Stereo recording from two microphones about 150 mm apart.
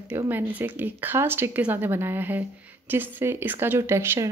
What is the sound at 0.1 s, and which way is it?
Speech, 10° right (ahead or behind).